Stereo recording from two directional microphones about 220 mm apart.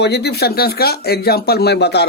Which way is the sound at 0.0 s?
50° left (ahead or behind).